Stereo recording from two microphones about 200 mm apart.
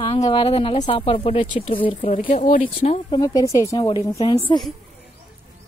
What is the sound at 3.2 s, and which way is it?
A woman's voice, 15° left (ahead or behind).